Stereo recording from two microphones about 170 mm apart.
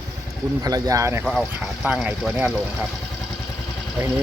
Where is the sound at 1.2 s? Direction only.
Centre (ahead or behind).